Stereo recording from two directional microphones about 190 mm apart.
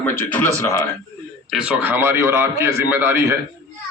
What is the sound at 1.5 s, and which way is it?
A man's voice, 5° right (ahead or behind).